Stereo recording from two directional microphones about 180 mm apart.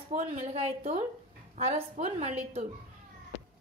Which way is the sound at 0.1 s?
40° right (ahead or behind).